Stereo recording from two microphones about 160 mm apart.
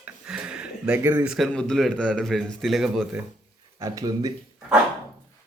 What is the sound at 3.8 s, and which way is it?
Speech, 20° right (ahead or behind).